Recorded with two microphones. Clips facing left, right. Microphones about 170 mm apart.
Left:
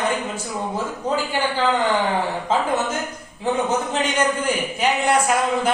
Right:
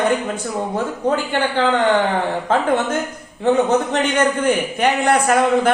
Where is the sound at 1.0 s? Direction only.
60° right (ahead or behind).